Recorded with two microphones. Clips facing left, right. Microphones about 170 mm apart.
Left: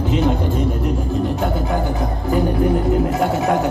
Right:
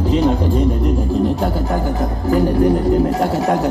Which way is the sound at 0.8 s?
Centre (ahead or behind).